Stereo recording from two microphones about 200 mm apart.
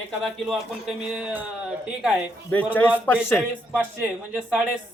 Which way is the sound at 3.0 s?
10° left (ahead or behind).